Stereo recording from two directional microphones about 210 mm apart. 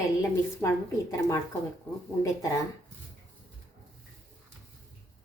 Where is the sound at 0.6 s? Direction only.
15° left (ahead or behind).